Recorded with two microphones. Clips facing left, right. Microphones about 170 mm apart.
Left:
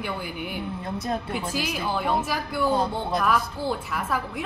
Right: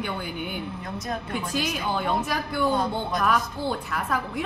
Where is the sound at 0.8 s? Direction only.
30° left (ahead or behind).